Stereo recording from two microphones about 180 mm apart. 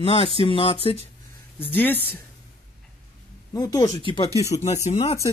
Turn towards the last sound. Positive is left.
turn(degrees=40)  # may be behind; listen again after turning